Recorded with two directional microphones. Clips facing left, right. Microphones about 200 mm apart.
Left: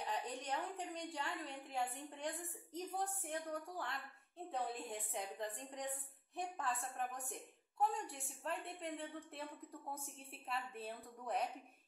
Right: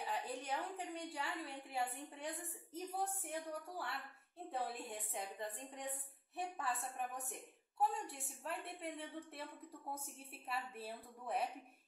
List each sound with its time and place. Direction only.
0.0 s a woman's voice: 5° right (ahead or behind)
7.9 s a woman's voice: centre (ahead or behind)
10.5 s a woman's voice: 5° right (ahead or behind)